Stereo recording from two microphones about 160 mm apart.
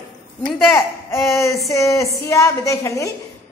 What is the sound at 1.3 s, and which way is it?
A woman's voice, 15° left (ahead or behind).